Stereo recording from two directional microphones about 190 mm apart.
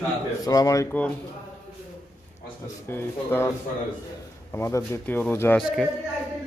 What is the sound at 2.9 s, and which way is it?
Speech, 10° left (ahead or behind).